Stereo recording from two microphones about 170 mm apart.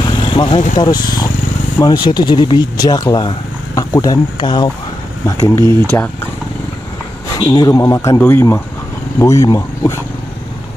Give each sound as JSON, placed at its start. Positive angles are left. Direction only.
{"t": 0.0, "sound": "vehicle", "side_deg": 30}
{"t": 0.7, "sound": "speech", "side_deg": 25}
{"t": 5.4, "sound": "speech", "side_deg": 15}
{"t": 7.3, "sound": "speech", "side_deg": 25}